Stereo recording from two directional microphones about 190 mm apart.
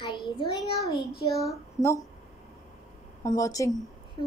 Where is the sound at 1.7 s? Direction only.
15° left (ahead or behind).